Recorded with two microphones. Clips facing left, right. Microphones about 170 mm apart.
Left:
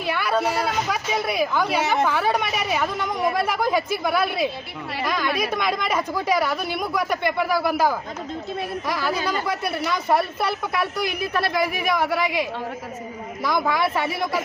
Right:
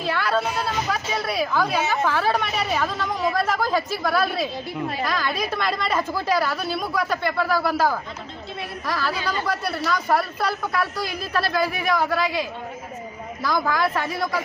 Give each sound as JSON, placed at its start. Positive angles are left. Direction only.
{"t": 0.1, "sound": "a sound", "side_deg": 15}
{"t": 0.9, "sound": "speech", "side_deg": 15}
{"t": 8.9, "sound": "a man's voice", "side_deg": 15}
{"t": 13.8, "sound": "speech", "side_deg": 5}